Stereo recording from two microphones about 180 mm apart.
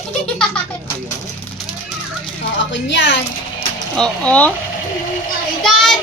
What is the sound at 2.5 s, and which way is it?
Speech, 90° left.